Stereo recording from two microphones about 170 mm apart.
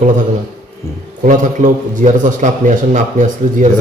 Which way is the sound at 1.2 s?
50° right (ahead or behind).